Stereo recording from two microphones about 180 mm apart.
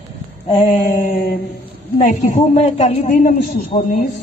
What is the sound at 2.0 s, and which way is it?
Speech, 45° left (ahead or behind).